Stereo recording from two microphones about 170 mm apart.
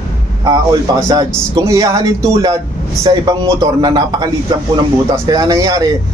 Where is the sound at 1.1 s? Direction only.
20° right (ahead or behind).